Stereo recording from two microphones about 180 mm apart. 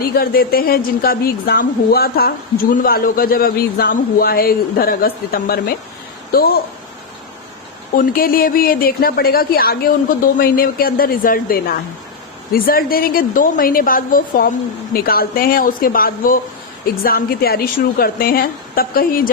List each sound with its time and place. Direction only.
0.0 s a woman's voice: 55° left (ahead or behind)
7.9 s a woman's voice: 55° left (ahead or behind)